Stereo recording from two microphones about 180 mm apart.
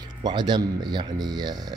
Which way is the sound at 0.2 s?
25° right (ahead or behind).